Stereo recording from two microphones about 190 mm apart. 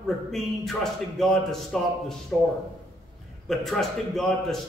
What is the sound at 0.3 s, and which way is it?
A man's voice, centre (ahead or behind).